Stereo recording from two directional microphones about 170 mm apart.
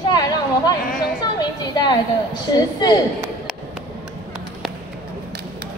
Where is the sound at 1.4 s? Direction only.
25° left (ahead or behind).